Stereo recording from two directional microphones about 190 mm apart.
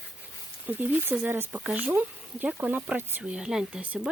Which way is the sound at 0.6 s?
10° right (ahead or behind).